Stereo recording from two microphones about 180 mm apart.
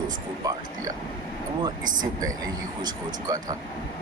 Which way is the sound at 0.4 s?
20° right (ahead or behind).